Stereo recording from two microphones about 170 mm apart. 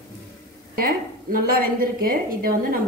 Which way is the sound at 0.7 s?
60° right (ahead or behind).